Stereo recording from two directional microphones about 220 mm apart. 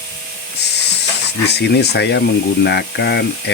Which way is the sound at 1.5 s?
50° left (ahead or behind).